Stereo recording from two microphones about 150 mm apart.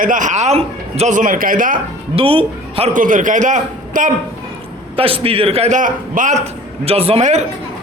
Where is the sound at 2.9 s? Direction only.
60° right (ahead or behind).